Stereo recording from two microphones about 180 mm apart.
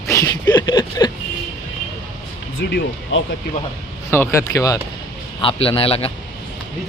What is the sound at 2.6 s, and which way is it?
Speech, 70° left (ahead or behind).